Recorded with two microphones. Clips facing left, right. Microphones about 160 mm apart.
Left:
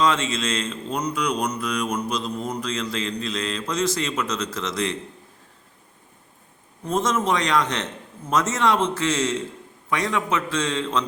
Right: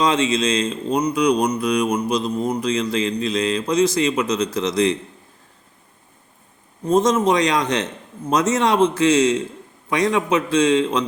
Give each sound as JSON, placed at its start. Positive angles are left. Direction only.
{"t": 0.0, "sound": "mantra", "side_deg": -15}
{"t": 7.0, "sound": "mantra", "side_deg": -15}